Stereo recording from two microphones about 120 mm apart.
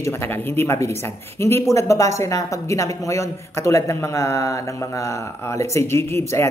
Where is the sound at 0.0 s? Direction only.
20° left (ahead or behind).